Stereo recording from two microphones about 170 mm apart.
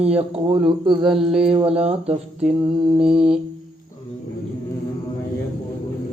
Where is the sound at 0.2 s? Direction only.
30° right (ahead or behind).